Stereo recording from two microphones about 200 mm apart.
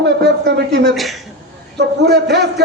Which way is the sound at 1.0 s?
Centre (ahead or behind).